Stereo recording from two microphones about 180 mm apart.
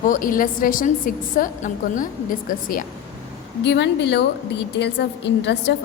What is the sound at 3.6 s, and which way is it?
A woman's voice, 80° left.